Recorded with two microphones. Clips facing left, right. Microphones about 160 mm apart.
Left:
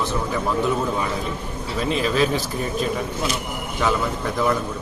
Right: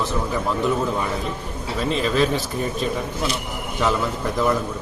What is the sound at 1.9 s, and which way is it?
Speech, centre (ahead or behind).